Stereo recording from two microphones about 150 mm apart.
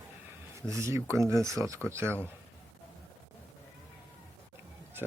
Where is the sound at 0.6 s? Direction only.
20° right (ahead or behind).